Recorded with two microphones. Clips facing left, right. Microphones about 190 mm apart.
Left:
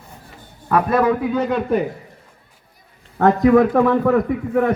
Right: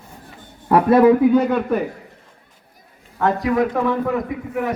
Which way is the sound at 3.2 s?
45° left (ahead or behind).